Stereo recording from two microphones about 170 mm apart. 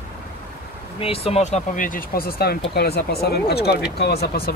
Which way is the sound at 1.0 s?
35° left (ahead or behind).